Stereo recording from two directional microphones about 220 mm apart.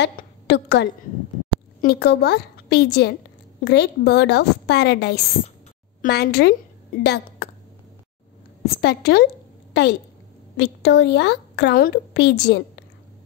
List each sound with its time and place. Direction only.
0.0 s a woman's voice: 50° left (ahead or behind)
8.8 s a woman's voice: 45° left (ahead or behind)